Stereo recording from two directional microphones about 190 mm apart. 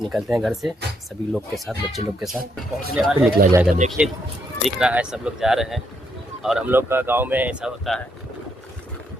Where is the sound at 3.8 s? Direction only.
40° right (ahead or behind).